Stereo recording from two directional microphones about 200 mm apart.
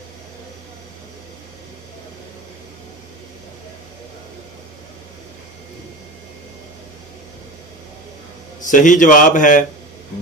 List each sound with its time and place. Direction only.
8.6 s a man's voice: 40° left (ahead or behind)